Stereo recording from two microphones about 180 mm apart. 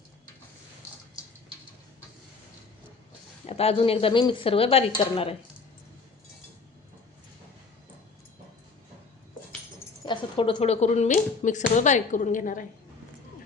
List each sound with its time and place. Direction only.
3.4 s speech: 35° left (ahead or behind)
10.1 s speech: 30° left (ahead or behind); by 12.6 s 50° left (ahead or behind)